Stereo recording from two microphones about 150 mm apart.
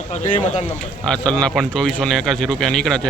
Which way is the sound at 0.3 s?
40° left (ahead or behind).